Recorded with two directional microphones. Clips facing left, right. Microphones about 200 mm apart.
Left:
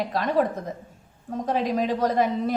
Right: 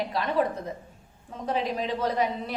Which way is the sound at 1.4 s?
45° left (ahead or behind).